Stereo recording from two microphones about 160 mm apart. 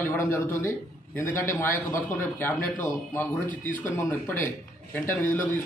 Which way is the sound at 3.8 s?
15° left (ahead or behind).